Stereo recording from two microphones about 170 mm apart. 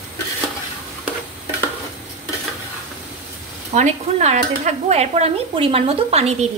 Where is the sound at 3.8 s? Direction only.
45° right (ahead or behind).